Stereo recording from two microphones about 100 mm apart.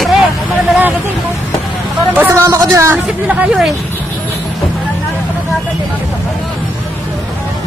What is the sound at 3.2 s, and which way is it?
Speech, 10° right (ahead or behind).